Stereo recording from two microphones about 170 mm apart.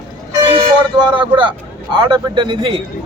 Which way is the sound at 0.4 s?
25° right (ahead or behind).